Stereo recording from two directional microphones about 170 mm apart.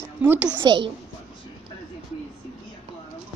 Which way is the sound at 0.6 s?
25° right (ahead or behind).